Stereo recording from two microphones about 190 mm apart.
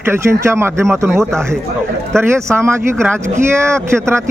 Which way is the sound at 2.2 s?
15° right (ahead or behind).